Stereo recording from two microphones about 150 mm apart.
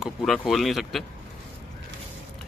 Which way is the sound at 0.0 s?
5° left (ahead or behind).